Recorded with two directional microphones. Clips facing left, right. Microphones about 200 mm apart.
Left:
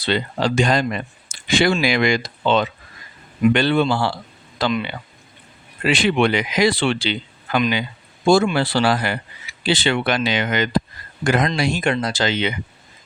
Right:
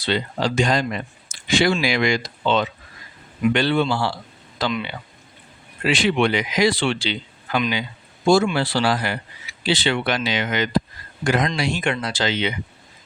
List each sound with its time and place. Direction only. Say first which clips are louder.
0.0 s speech: left 2 dB; 60° left (ahead or behind)